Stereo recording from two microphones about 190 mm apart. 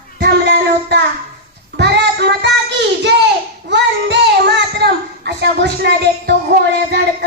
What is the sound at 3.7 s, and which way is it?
A child's voice, 65° right (ahead or behind).